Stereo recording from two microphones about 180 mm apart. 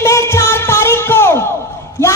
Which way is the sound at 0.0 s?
15° left (ahead or behind).